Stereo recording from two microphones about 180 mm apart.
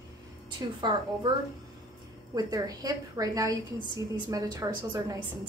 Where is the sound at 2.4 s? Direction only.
20° right (ahead or behind).